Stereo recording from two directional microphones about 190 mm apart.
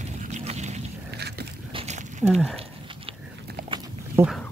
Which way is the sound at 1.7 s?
30° right (ahead or behind).